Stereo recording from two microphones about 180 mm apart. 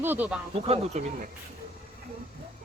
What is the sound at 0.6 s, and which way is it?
Speech, 35° right (ahead or behind).